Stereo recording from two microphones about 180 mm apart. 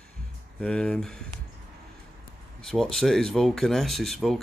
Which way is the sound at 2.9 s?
Centre (ahead or behind).